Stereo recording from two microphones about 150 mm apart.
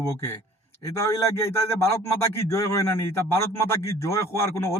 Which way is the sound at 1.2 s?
15° left (ahead or behind).